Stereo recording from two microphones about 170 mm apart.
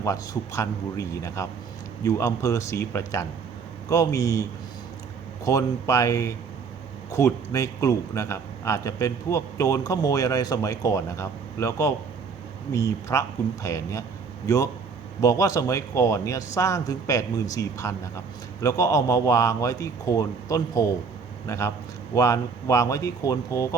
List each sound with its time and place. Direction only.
0.0 s a man's voice: 20° left (ahead or behind)
5.5 s a man's voice: 20° left (ahead or behind)